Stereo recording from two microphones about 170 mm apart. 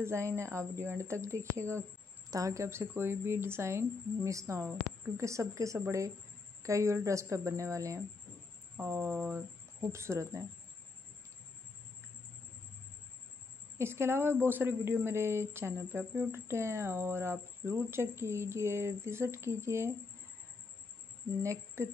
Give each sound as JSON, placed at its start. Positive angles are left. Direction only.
{"t": 0.0, "sound": "speech", "side_deg": -15}
{"t": 13.7, "sound": "speech", "side_deg": -15}
{"t": 21.4, "sound": "speech", "side_deg": -15}